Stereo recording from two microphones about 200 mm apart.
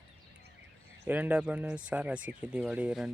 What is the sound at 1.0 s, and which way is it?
Speech, 5° right (ahead or behind).